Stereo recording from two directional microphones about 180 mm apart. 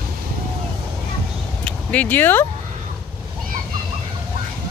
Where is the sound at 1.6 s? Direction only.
10° left (ahead or behind).